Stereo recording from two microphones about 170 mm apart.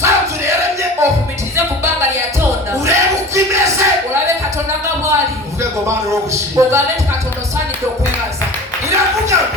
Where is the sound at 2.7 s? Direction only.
15° right (ahead or behind).